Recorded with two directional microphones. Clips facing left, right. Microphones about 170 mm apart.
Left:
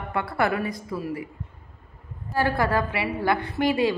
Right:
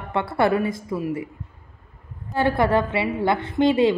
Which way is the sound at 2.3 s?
20° right (ahead or behind).